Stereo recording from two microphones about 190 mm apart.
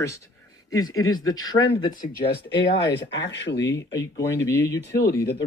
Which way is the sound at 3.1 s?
70° left (ahead or behind).